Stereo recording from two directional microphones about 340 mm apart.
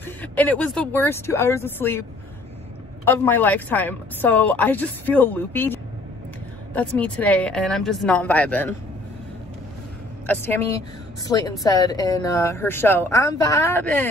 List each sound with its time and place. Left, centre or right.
0.0 s a woman's voice: centre
3.1 s a woman's voice: centre
10.2 s a woman's voice: centre